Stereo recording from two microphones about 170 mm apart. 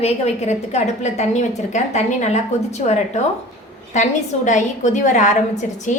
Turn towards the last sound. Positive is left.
turn(degrees=45)  # may be behind; listen again after turning